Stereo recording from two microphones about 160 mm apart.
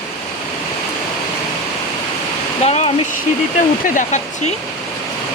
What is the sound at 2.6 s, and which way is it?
Speech, 40° left (ahead or behind).